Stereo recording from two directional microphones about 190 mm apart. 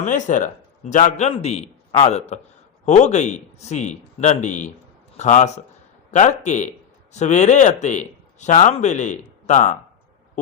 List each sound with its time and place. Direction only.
0.0 s speech: 40° left (ahead or behind)